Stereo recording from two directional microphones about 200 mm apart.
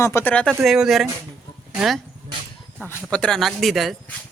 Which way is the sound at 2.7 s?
10° left (ahead or behind).